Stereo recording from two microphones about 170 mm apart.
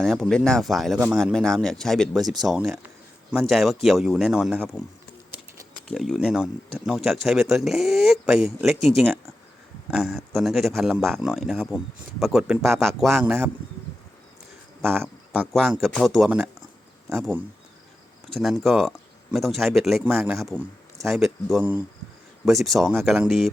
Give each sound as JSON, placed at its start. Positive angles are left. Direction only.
{"t": 0.0, "sound": "speech", "side_deg": 0}
{"t": 5.9, "sound": "speech", "side_deg": 0}
{"t": 14.8, "sound": "a sound", "side_deg": 5}
{"t": 15.8, "sound": "speech", "side_deg": 0}
{"t": 18.3, "sound": "speech", "side_deg": 0}